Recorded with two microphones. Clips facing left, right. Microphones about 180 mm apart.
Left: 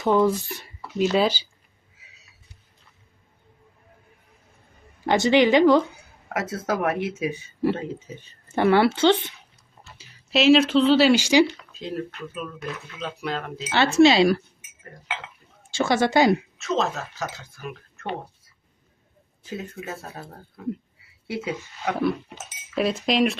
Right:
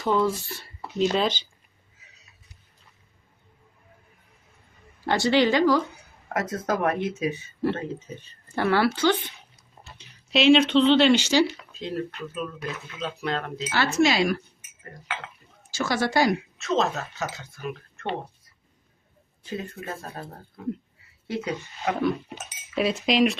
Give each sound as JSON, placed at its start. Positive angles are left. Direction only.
{"t": 0.0, "sound": "speech", "side_deg": 15}
{"t": 1.1, "sound": "speech", "side_deg": 5}
{"t": 5.0, "sound": "speech", "side_deg": 20}
{"t": 6.2, "sound": "speech", "side_deg": 10}
{"t": 10.0, "sound": "speech", "side_deg": 0}
{"t": 11.4, "sound": "speech", "side_deg": -5}
{"t": 13.7, "sound": "speech", "side_deg": 25}
{"t": 15.7, "sound": "speech", "side_deg": 25}
{"t": 16.6, "sound": "speech", "side_deg": 0}
{"t": 19.4, "sound": "speech", "side_deg": 0}
{"t": 21.2, "sound": "speech", "side_deg": 10}